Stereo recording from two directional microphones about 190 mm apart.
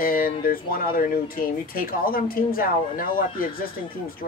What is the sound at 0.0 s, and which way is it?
Speech, 50° left (ahead or behind).